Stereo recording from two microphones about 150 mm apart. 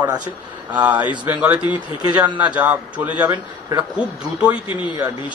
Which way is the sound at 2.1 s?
10° right (ahead or behind).